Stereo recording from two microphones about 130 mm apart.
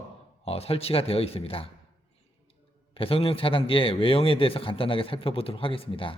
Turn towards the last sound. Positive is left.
turn(degrees=45)  # may be behind; listen again after turning